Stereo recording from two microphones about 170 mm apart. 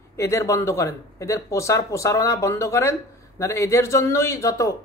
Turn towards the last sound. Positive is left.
turn(degrees=20)  # may be behind; listen again after turning